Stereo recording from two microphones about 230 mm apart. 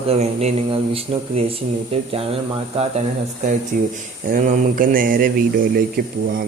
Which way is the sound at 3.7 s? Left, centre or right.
Right.